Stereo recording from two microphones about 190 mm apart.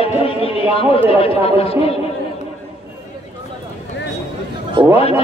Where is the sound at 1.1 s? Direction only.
30° left (ahead or behind).